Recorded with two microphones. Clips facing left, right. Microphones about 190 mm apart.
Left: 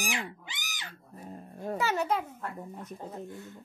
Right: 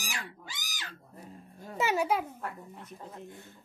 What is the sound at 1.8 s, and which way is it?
Speech, 10° right (ahead or behind).